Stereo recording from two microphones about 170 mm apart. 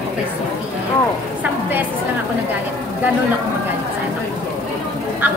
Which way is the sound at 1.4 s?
10° right (ahead or behind).